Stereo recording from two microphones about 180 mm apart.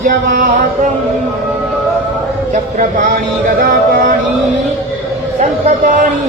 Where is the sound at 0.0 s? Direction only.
50° right (ahead or behind).